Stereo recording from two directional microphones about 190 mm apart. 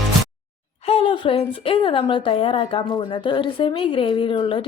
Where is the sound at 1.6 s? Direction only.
25° left (ahead or behind).